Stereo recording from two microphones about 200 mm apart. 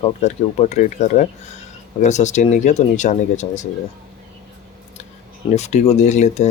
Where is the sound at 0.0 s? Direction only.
35° left (ahead or behind).